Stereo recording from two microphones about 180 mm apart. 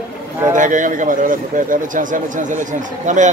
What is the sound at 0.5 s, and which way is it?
A man's voice, 45° right (ahead or behind).